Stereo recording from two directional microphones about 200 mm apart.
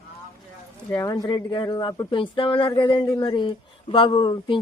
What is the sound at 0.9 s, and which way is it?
Speech, 15° left (ahead or behind).